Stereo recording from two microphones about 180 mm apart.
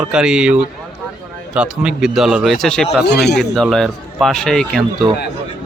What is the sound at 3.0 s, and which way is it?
Speech, 65° left (ahead or behind).